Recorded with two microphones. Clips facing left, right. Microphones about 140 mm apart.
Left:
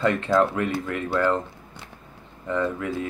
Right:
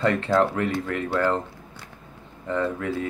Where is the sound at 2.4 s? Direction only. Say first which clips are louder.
Even; 35° right (ahead or behind).